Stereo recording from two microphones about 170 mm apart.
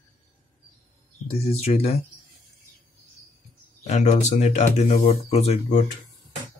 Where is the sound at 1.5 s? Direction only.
35° left (ahead or behind).